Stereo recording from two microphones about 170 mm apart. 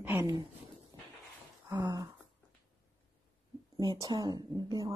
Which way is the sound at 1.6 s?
25° right (ahead or behind).